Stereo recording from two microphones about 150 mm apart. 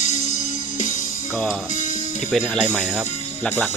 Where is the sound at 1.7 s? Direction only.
55° left (ahead or behind).